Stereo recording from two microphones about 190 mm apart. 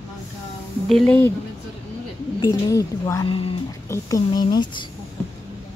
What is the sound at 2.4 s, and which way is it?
Speech, 20° left (ahead or behind).